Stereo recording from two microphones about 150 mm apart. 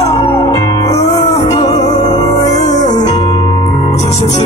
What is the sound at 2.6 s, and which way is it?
Music, 50° left (ahead or behind).